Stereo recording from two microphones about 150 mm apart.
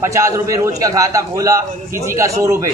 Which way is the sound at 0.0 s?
20° right (ahead or behind).